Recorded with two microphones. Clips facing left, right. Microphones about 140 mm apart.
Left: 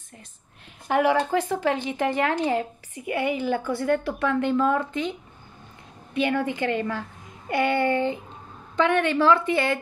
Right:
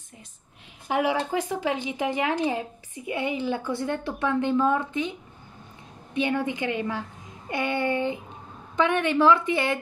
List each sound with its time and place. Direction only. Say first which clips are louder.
0.8 s a woman's voice: left 4 dB; 10° right (ahead or behind)
6.1 s a woman's voice: left 2 dB; 20° right (ahead or behind)